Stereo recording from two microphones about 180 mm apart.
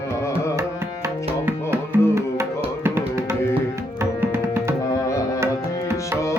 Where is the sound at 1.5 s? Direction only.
15° right (ahead or behind).